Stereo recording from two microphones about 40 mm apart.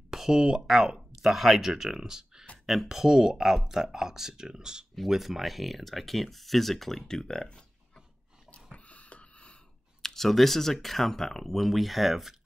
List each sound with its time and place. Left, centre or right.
0.1 s speech: centre
2.6 s speech: centre
5.0 s speech: centre; by 8.0 s left
8.7 s a sound: left
10.0 s speech: centre